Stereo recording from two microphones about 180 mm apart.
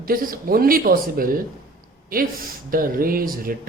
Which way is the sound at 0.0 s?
50° right (ahead or behind).